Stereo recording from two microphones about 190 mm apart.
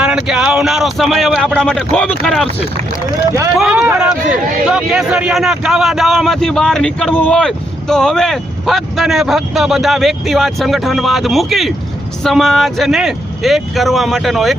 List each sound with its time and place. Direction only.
0.0 s speech: 5° right (ahead or behind)
3.5 s speech: 5° right (ahead or behind)